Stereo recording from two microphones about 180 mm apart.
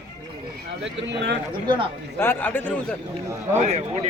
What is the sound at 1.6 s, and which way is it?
Speech, 25° right (ahead or behind).